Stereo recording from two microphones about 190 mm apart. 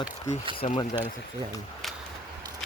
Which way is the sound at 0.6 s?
40° left (ahead or behind).